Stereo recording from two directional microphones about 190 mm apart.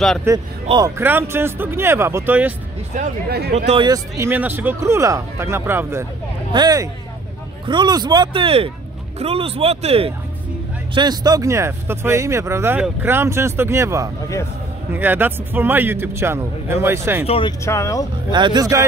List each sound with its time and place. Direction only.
0.3 s speech: 15° right (ahead or behind)
2.9 s speech: 40° right (ahead or behind)
3.3 s speech: 60° right (ahead or behind)
3.5 s speech: 35° right (ahead or behind)
3.8 s speech: 15° right (ahead or behind); by 10.1 s 30° right (ahead or behind)
11.0 s speech: 20° right (ahead or behind)
17.3 s speech: 25° left (ahead or behind)
17.6 s speech: 15° left (ahead or behind)
18.3 s speech: 25° right (ahead or behind)